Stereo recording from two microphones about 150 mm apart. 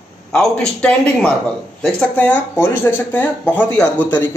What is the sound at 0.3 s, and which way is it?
A man's voice, 5° left (ahead or behind).